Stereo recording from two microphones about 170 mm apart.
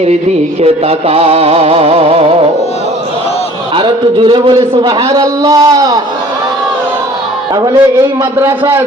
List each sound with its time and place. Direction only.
0.6 s music: 35° right (ahead or behind)
3.8 s a man's voice: 30° right (ahead or behind)
7.5 s a man's voice: 20° right (ahead or behind)